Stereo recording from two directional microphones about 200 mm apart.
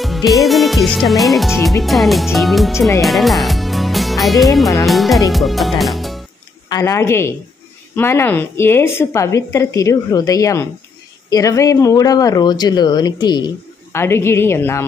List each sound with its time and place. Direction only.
0.0 s music: centre (ahead or behind)
0.5 s speech: centre (ahead or behind)
3.0 s music: centre (ahead or behind)
4.8 s speech: centre (ahead or behind)
6.7 s speech: 15° left (ahead or behind)